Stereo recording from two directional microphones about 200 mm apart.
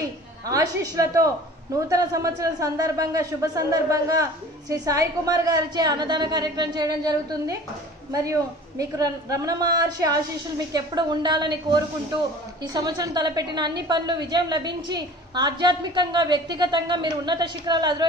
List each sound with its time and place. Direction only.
0.0 s a woman's voice: 15° right (ahead or behind)